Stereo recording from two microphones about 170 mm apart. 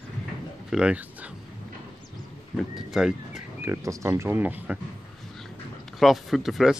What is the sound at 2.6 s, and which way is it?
Speech, centre (ahead or behind).